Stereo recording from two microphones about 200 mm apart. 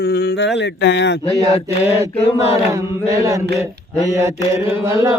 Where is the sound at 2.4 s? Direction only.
30° left (ahead or behind).